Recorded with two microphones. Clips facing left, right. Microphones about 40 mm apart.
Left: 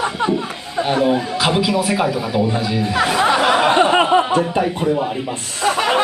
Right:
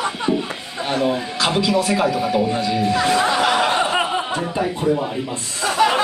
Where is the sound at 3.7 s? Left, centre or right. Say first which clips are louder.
Left 6 dB; left.